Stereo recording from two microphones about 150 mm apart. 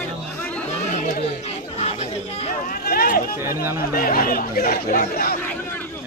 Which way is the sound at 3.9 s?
70° left (ahead or behind).